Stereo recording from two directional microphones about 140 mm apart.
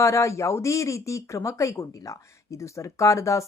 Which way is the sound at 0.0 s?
20° left (ahead or behind).